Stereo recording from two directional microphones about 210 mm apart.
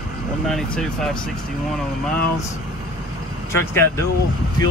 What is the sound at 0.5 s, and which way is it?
Speech, centre (ahead or behind).